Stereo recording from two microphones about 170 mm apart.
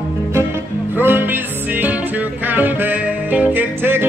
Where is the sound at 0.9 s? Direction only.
10° right (ahead or behind).